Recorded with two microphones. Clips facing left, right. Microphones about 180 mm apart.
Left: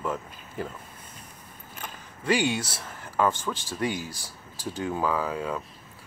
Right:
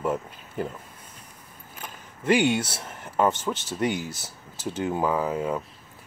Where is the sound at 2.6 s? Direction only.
25° right (ahead or behind).